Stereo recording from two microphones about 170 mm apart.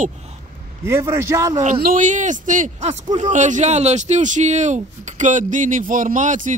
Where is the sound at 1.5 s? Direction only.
45° right (ahead or behind).